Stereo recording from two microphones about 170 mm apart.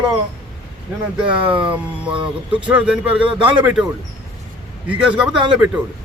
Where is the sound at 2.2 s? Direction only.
30° right (ahead or behind).